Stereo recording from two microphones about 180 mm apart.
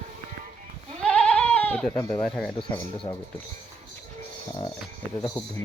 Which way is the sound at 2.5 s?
30° left (ahead or behind).